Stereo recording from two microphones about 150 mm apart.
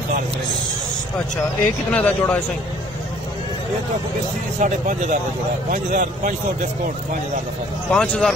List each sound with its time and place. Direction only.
1.9 s speech: 10° left (ahead or behind)
4.6 s speech: 55° right (ahead or behind)
7.9 s speech: 5° left (ahead or behind)